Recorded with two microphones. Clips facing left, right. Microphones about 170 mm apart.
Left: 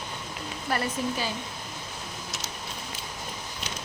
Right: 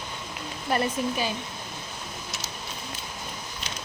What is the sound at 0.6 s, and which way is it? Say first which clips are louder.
Speech: right 3 dB; 20° right (ahead or behind).